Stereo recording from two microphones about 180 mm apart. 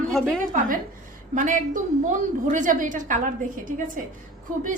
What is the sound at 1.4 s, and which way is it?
A woman's voice, 45° right (ahead or behind).